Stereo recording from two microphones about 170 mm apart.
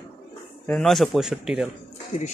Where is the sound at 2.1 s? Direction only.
50° left (ahead or behind).